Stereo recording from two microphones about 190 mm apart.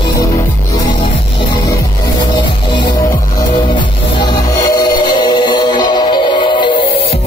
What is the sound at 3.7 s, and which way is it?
Music, 25° left (ahead or behind).